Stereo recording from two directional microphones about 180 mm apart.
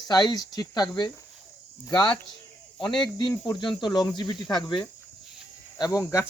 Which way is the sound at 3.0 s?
25° left (ahead or behind).